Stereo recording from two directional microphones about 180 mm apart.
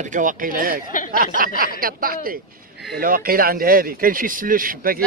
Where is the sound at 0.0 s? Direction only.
45° right (ahead or behind).